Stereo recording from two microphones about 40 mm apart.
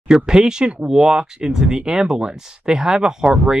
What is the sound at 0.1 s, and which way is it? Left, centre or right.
Speech, centre.